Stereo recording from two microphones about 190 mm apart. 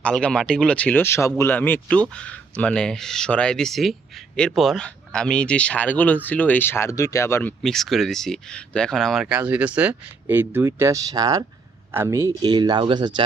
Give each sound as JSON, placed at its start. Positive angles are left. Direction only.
{"t": 0.0, "sound": "speech", "side_deg": 5}
{"t": 7.6, "sound": "speech", "side_deg": 0}